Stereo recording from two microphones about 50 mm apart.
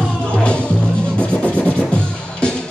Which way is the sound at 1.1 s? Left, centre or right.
Left.